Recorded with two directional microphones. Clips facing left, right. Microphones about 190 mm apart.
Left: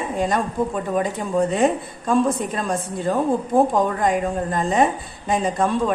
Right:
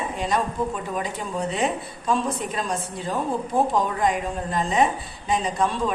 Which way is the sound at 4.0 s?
50° left (ahead or behind).